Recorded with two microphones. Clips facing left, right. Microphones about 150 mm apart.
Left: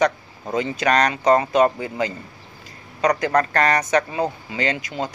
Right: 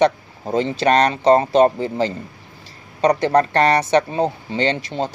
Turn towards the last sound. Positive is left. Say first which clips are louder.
# right 4 dB
turn(degrees=-30)  # may be behind; listen again after turning